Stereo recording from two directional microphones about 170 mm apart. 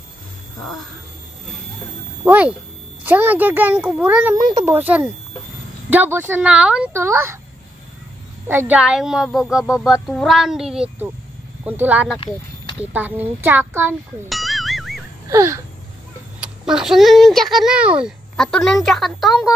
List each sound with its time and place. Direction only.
2.2 s speech: 10° right (ahead or behind)
8.5 s speech: 10° right (ahead or behind)
14.3 s music: centre (ahead or behind)
15.2 s wail: 15° right (ahead or behind)
16.3 s a child's voice: 5° right (ahead or behind)
18.3 s speech: 5° left (ahead or behind)